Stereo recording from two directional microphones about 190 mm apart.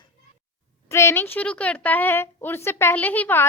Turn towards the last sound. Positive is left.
turn(degrees=10)  # may be behind; listen again after turning